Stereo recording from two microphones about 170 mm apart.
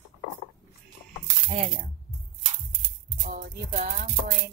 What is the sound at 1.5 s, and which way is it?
Speech, 40° right (ahead or behind).